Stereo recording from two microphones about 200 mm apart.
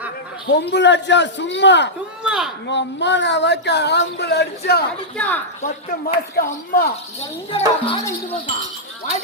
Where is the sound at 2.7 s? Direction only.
60° left (ahead or behind).